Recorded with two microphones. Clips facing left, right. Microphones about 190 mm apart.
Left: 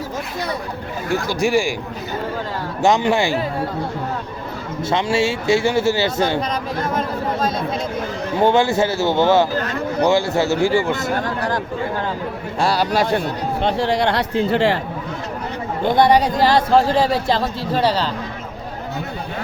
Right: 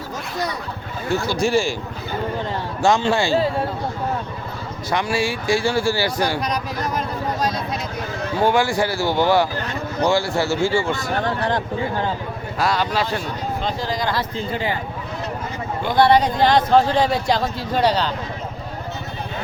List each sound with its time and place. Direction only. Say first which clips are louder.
1.1 s speech: left 1 dB; 15° left (ahead or behind)
2.8 s speech: left 2 dB; 20° left (ahead or behind)
4.9 s speech: left 3 dB; 25° left (ahead or behind)
7.4 s a sound: left 2 dB; 25° left (ahead or behind)
8.4 s speech: left 3 dB; 20° left (ahead or behind)
11.3 s speech: even; 25° right (ahead or behind)
12.5 s speech: left 3 dB; 35° left (ahead or behind); by 14.8 s 75° left (ahead or behind)
16.0 s speech: even; 15° left (ahead or behind)